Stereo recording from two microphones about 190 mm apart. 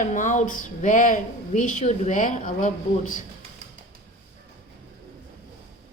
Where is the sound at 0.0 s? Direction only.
40° left (ahead or behind).